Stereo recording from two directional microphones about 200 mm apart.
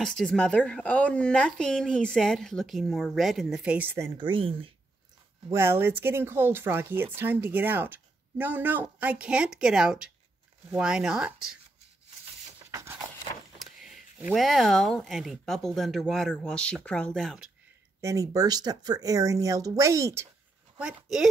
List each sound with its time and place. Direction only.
0.0 s speech: centre (ahead or behind)
4.2 s speech: 25° right (ahead or behind)
5.5 s speech: 10° right (ahead or behind)
12.7 s a sound: 10° right (ahead or behind)
13.6 s a sound: centre (ahead or behind)
14.3 s speech: centre (ahead or behind)
18.0 s speech: 15° right (ahead or behind)
20.7 s a woman's voice: 5° right (ahead or behind)